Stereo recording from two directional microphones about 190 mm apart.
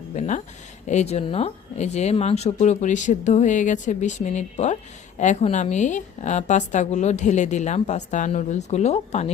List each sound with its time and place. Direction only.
0.2 s a woman's voice: 40° left (ahead or behind)